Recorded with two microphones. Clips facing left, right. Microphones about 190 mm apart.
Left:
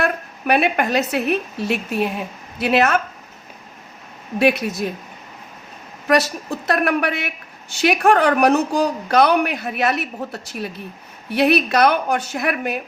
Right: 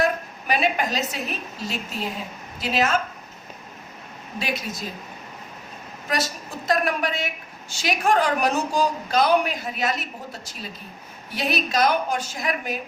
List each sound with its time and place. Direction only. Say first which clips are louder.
0.0 s a woman's voice: left 2 dB; 60° left (ahead or behind)
4.4 s a woman's voice: left 12 dB; 60° left (ahead or behind)
6.1 s a woman's voice: left 9 dB; 65° left (ahead or behind)